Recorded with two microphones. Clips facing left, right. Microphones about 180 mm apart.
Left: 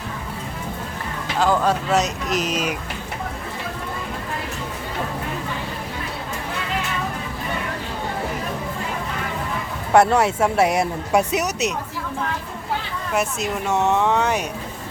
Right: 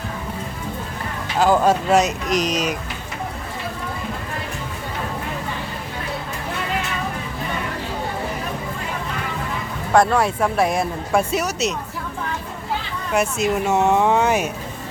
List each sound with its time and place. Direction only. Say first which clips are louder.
1.5 s speech: right 3 dB; 15° right (ahead or behind)
2.3 s speech: right 2 dB; 5° left (ahead or behind)
9.9 s speech: left 1 dB; 25° left (ahead or behind)
13.1 s speech: right 4 dB; 5° right (ahead or behind)